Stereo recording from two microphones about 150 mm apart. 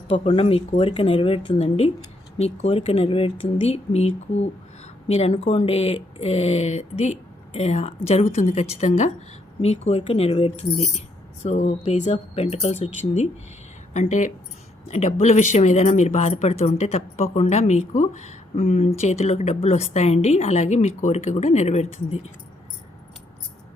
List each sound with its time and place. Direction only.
0.1 s speech: 40° left (ahead or behind)